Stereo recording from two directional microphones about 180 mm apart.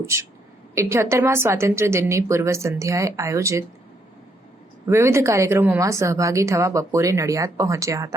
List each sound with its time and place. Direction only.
0.0 s a woman's voice: 15° right (ahead or behind)
4.9 s a woman's voice: 15° right (ahead or behind)